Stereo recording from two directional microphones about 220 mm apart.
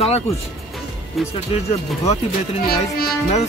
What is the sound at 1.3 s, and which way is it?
Speech, 25° left (ahead or behind).